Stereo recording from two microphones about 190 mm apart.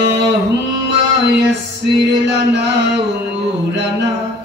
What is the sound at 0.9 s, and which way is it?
Music, 65° right (ahead or behind).